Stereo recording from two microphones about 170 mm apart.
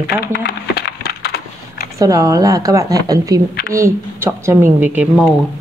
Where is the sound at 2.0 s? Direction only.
20° right (ahead or behind).